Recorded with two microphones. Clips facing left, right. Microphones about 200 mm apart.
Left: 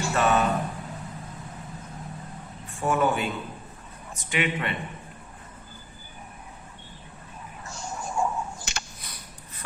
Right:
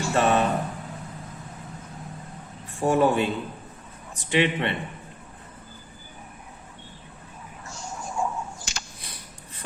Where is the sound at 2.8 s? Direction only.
35° right (ahead or behind).